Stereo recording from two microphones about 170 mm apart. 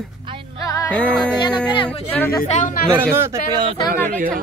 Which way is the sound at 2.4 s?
40° left (ahead or behind).